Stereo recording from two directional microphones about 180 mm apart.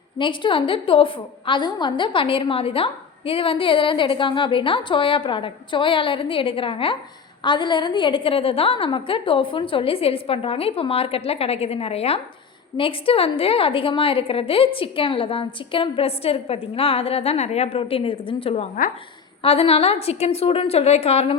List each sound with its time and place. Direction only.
0.2 s a woman's voice: 25° left (ahead or behind)